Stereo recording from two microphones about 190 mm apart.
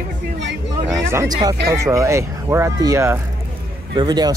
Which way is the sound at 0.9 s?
15° right (ahead or behind).